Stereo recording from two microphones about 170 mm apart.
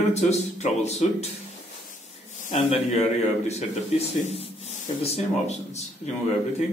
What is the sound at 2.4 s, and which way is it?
Speech, 40° left (ahead or behind).